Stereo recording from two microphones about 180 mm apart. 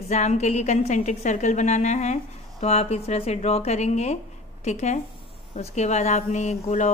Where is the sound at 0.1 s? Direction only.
40° left (ahead or behind).